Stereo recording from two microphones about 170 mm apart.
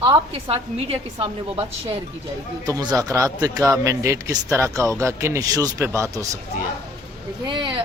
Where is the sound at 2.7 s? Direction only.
20° right (ahead or behind).